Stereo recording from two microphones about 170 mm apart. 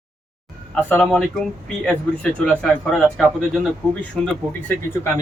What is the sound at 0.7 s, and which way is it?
Speech, 10° left (ahead or behind).